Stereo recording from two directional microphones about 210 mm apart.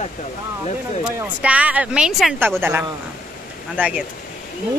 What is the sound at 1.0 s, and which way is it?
Speech, 5° right (ahead or behind).